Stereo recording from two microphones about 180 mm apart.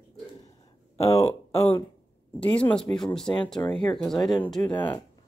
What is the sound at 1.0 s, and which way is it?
Speech, 15° left (ahead or behind).